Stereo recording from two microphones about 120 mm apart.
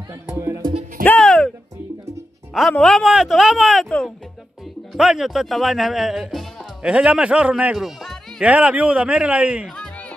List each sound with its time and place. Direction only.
0.1 s speech: 20° right (ahead or behind)
1.0 s music: 5° left (ahead or behind)
2.7 s speech: 5° left (ahead or behind)
3.0 s speech: 5° right (ahead or behind)
8.5 s a man's voice: 10° right (ahead or behind)
9.8 s music: 10° left (ahead or behind)